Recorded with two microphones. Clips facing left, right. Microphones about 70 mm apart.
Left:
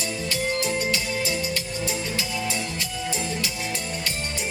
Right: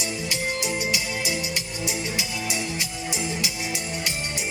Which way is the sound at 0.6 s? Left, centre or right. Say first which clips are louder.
Left 2 dB; centre.